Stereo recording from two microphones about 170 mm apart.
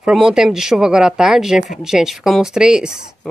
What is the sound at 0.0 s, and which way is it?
Speech, centre (ahead or behind).